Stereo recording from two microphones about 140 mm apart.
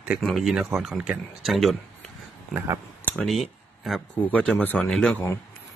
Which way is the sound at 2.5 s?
20° right (ahead or behind).